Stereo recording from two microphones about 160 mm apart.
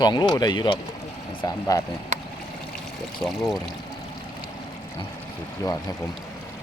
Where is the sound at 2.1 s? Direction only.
45° right (ahead or behind).